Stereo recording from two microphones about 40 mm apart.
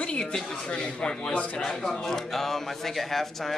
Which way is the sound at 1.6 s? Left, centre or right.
Centre.